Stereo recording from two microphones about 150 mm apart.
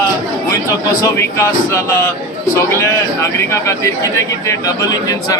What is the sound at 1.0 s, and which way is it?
A man's voice, 20° left (ahead or behind).